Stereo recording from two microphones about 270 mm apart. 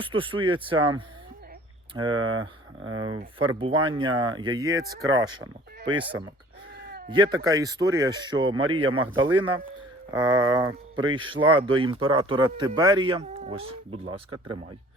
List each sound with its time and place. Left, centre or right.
0.0 s speech: centre
2.1 s speech: right
3.0 s speech: centre